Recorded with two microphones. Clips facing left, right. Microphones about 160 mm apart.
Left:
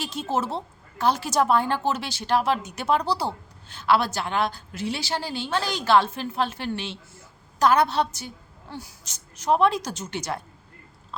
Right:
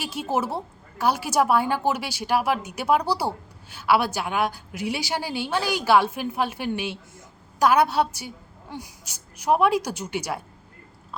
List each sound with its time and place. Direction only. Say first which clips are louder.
0.0 s a woman's voice: right 1 dB; 10° right (ahead or behind)